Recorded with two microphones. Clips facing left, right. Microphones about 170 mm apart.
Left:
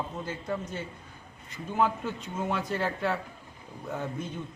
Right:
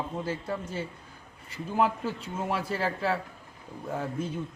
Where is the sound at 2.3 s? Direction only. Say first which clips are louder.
Left 1 dB; 5° right (ahead or behind).